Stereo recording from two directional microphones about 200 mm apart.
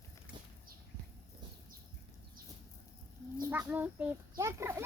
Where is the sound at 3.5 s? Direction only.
10° right (ahead or behind).